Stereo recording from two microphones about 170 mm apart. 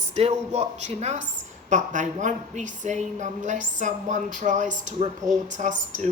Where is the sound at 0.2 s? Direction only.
40° right (ahead or behind).